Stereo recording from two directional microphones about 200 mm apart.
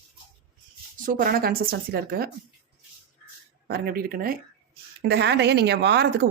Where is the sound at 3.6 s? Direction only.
50° right (ahead or behind).